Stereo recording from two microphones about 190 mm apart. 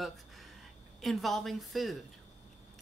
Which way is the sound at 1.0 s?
Centre (ahead or behind).